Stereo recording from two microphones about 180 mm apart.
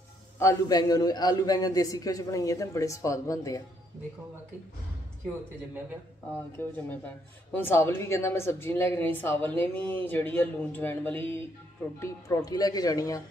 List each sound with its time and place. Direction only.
0.4 s a man's voice: 20° left (ahead or behind)
7.5 s a woman's voice: 15° left (ahead or behind)